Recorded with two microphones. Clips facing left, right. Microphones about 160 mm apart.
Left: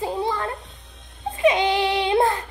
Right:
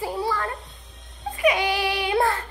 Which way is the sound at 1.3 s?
25° left (ahead or behind).